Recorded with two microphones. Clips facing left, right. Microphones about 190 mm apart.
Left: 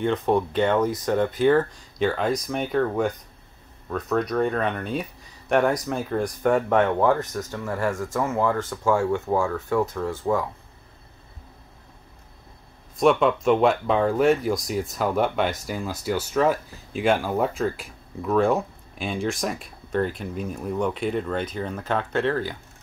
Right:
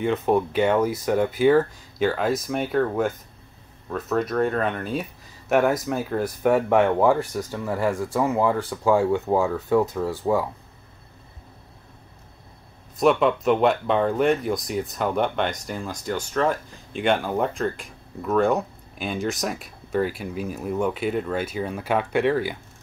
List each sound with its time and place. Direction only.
0.0 s speech: 5° right (ahead or behind)
13.0 s speech: centre (ahead or behind)